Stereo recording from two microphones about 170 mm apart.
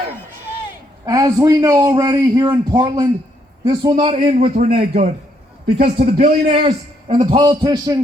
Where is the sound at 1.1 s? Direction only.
20° right (ahead or behind).